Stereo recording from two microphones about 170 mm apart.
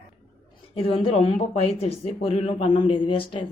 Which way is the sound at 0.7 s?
35° left (ahead or behind).